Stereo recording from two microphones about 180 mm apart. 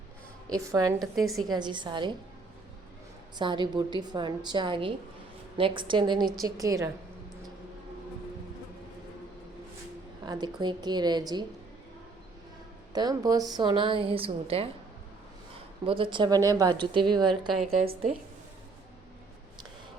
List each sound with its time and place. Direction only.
0.4 s a woman's voice: 20° right (ahead or behind)
1.1 s speech: centre (ahead or behind)
1.5 s a woman's voice: 25° right (ahead or behind)
3.3 s a woman's voice: 25° right (ahead or behind)
10.2 s a woman's voice: 25° right (ahead or behind)
12.9 s a woman's voice: 20° right (ahead or behind)
15.9 s a woman's voice: 30° right (ahead or behind)
17.2 s speech: centre (ahead or behind)